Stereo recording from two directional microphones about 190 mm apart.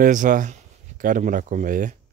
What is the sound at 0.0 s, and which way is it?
Speech, 45° right (ahead or behind).